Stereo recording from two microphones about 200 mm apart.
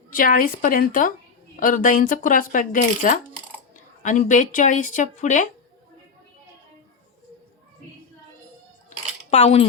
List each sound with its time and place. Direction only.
0.1 s a woman's voice: 45° left (ahead or behind)
9.3 s speech: 35° left (ahead or behind)